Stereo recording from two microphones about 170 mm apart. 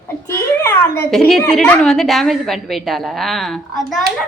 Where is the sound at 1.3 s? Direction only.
5° left (ahead or behind).